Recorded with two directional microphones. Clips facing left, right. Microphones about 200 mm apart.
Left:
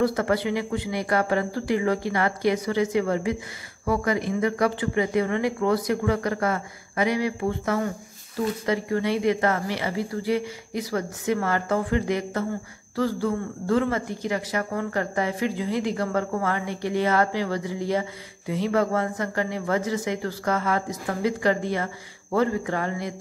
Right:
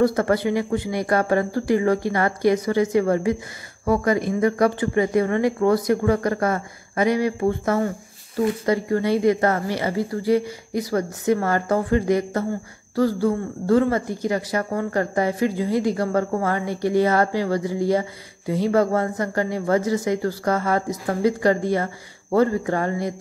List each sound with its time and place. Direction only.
0.0 s speech: 45° right (ahead or behind)